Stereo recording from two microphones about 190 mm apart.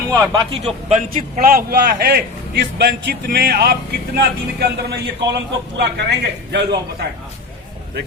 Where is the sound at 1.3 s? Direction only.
50° right (ahead or behind).